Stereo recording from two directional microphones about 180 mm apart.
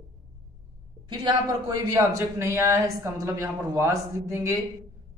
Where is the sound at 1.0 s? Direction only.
25° right (ahead or behind).